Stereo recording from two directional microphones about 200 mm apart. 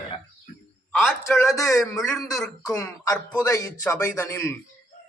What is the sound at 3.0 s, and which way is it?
A man's voice, 15° left (ahead or behind).